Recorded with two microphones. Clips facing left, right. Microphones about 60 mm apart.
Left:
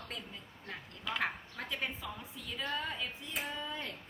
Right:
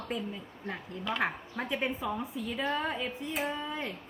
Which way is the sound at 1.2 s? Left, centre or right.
Right.